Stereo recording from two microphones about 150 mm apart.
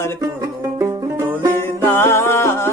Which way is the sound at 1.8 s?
15° left (ahead or behind).